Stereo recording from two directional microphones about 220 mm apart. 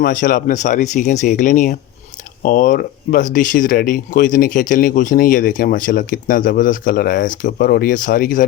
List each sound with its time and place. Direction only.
0.0 s speech: 40° left (ahead or behind)